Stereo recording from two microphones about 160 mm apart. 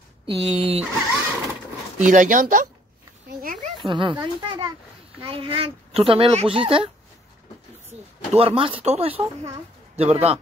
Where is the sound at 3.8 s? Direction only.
30° right (ahead or behind).